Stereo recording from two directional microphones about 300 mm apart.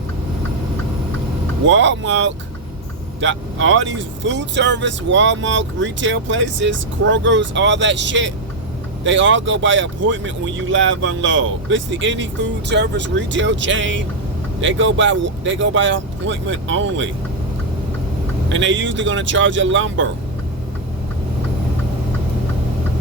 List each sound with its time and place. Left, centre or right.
1.6 s speech: right
18.4 s speech: right